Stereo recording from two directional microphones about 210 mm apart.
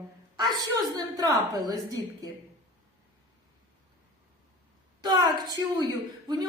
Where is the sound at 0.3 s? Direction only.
20° right (ahead or behind).